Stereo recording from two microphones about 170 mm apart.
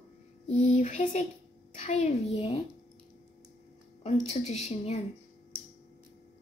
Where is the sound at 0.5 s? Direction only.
45° left (ahead or behind).